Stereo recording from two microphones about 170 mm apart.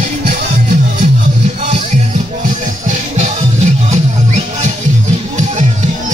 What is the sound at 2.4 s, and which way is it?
Music, 45° right (ahead or behind).